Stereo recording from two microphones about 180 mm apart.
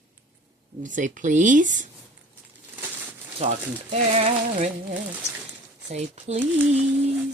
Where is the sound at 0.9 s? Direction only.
45° right (ahead or behind).